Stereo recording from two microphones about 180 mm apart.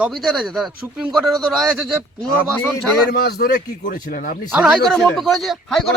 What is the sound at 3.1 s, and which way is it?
Speech, 60° left (ahead or behind).